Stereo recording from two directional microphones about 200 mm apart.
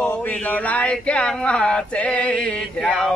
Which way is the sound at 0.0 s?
5° left (ahead or behind).